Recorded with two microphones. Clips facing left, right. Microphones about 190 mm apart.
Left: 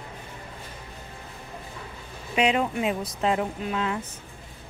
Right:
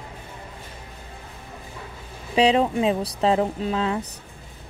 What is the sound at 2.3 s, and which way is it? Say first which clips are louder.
Speech: right 5 dB; 35° right (ahead or behind).